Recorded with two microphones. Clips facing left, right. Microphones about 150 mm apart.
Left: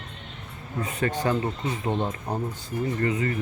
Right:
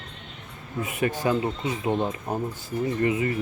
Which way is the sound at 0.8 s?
15° right (ahead or behind).